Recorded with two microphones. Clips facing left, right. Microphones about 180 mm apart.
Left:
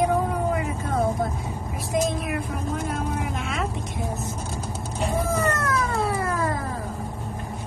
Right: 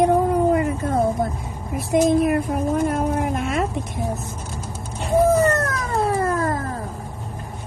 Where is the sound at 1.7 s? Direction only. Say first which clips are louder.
Right 8 dB; 55° right (ahead or behind).